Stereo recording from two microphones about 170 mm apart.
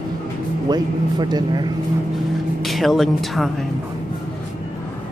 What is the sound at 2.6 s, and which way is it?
Speech, centre (ahead or behind).